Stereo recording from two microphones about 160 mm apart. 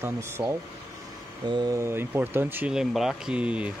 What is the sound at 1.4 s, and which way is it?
Speech, 25° right (ahead or behind).